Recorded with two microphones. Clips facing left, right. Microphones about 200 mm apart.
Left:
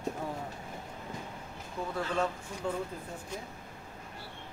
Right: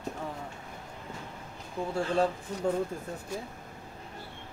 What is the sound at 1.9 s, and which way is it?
Speech, 30° right (ahead or behind).